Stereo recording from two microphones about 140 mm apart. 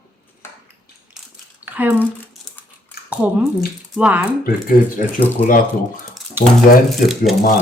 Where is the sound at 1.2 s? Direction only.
Centre (ahead or behind).